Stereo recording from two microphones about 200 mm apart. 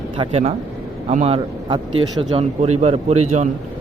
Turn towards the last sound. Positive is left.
turn(degrees=-35)  # may be behind; listen again after turning